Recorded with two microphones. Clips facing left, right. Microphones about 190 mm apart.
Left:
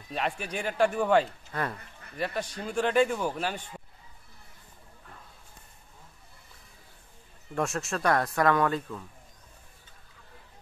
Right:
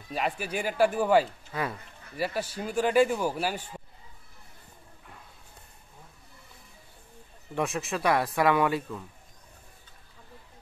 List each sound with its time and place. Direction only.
0.1 s speech: 5° right (ahead or behind)
7.5 s speech: centre (ahead or behind)